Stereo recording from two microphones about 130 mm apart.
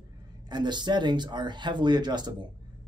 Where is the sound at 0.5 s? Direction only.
35° right (ahead or behind).